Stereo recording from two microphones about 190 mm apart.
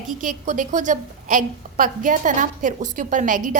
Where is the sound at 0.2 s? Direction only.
45° right (ahead or behind).